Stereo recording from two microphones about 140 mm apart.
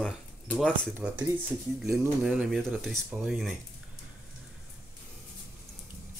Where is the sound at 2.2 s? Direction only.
5° right (ahead or behind).